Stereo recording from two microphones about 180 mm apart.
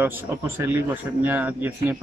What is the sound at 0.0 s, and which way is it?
Speech, 10° right (ahead or behind).